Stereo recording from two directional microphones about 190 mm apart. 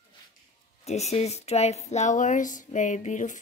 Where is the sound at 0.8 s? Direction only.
35° left (ahead or behind).